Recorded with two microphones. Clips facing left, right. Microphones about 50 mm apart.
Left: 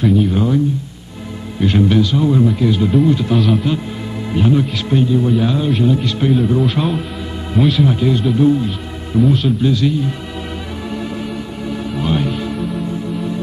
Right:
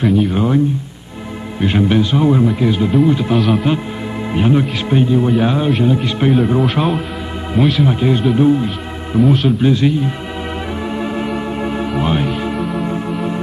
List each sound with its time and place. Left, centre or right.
0.0 s a man's voice: centre
0.3 s speech: right
1.6 s speech: right
3.3 s a man's voice: centre
4.3 s speech: right
5.8 s speech: centre
6.6 s a man's voice: centre
7.8 s speech: right
9.2 s a man's voice: centre
9.6 s speech: right
10.9 s organ: right
11.9 s speech: right
12.7 s music: right